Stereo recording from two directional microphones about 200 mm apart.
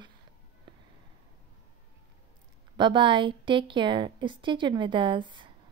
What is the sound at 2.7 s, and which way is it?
Speech, 25° right (ahead or behind).